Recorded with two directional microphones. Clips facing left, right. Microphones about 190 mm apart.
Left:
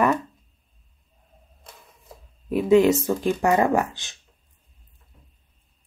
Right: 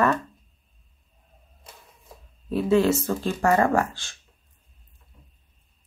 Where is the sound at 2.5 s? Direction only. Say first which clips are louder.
Left 3 dB; 15° left (ahead or behind).